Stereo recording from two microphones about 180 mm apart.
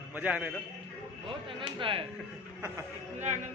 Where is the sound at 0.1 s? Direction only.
10° right (ahead or behind).